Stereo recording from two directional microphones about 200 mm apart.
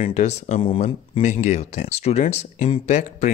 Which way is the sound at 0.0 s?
35° left (ahead or behind).